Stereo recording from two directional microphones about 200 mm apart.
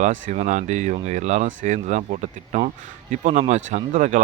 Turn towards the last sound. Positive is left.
turn(degrees=-35)  # may be behind; listen again after turning